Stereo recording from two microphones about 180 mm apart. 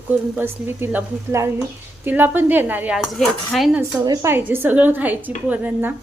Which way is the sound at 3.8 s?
20° right (ahead or behind).